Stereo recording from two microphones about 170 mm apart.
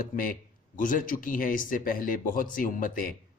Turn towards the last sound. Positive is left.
turn(degrees=55)  # may be behind; listen again after turning